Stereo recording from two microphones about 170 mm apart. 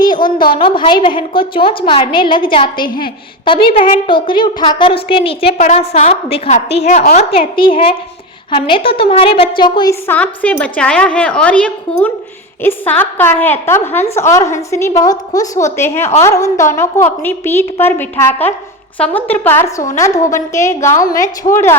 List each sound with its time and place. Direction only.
0.0 s a sound: 25° left (ahead or behind)
0.5 s a woman's voice: 30° left (ahead or behind)
5.5 s a woman's voice: 45° left (ahead or behind); by 9.9 s 25° left (ahead or behind)
9.9 s a woman's voice: 10° left (ahead or behind)